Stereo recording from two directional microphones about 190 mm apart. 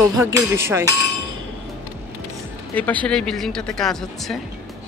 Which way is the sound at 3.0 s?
5° left (ahead or behind).